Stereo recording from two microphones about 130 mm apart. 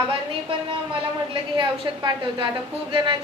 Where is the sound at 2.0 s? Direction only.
40° right (ahead or behind).